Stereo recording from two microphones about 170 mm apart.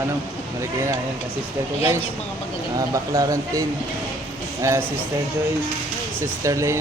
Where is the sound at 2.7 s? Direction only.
20° right (ahead or behind).